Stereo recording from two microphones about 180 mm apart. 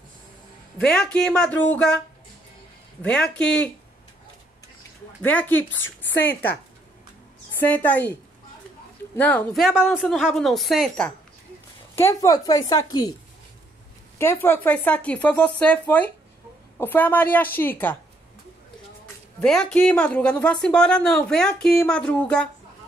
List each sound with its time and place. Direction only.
0.7 s speech: 5° left (ahead or behind)
3.0 s speech: 5° left (ahead or behind)
5.2 s a woman's voice: 10° left (ahead or behind)
7.6 s a woman's voice: 10° left (ahead or behind)
12.0 s a woman's voice: 15° left (ahead or behind)
14.1 s a woman's voice: 10° left (ahead or behind)
19.4 s speech: 5° left (ahead or behind)